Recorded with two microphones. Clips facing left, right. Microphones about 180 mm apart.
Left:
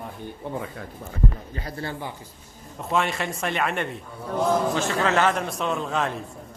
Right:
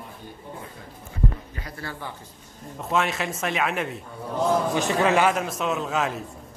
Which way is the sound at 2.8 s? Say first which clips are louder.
Even; centre (ahead or behind).